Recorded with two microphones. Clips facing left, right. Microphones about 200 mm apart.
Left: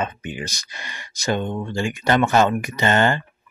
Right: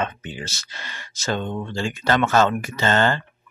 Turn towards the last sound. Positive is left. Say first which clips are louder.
# left 1 dB
turn(degrees=15)  # may be behind; listen again after turning